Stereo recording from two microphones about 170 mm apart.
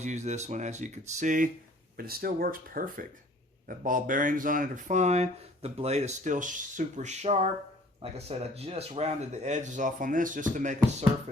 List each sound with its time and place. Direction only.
0.0 s speech: 45° right (ahead or behind)
2.0 s speech: 60° right (ahead or behind)